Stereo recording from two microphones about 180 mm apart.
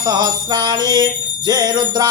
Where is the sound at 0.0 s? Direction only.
20° right (ahead or behind).